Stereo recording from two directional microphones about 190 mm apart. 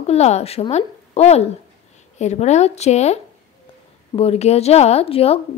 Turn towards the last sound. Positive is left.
turn(degrees=30)  # may be behind; listen again after turning